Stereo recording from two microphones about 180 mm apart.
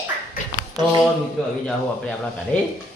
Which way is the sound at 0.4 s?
50° left (ahead or behind).